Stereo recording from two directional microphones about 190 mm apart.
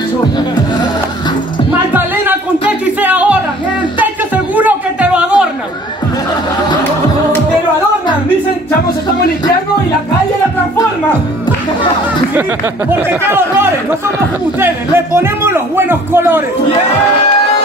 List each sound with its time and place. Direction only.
2.8 s music: 10° right (ahead or behind)
4.6 s a sound: 5° right (ahead or behind)
12.9 s a man's voice: 10° right (ahead or behind)